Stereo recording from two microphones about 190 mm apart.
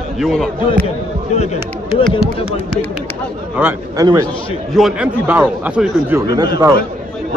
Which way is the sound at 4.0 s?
20° right (ahead or behind).